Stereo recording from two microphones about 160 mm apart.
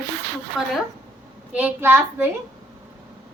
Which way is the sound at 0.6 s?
5° right (ahead or behind).